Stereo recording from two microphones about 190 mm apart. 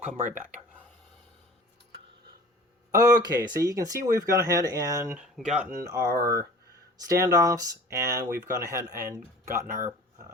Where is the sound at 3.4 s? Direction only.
20° right (ahead or behind).